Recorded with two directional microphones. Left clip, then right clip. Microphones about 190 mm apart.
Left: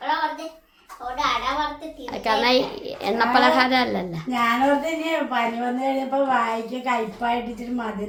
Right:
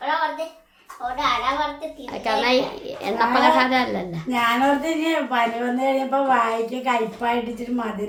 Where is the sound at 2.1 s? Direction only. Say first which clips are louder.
Left 1 dB; 20° left (ahead or behind).